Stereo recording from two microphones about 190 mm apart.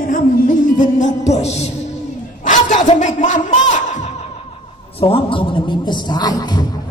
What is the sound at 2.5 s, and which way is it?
Speech, 40° left (ahead or behind).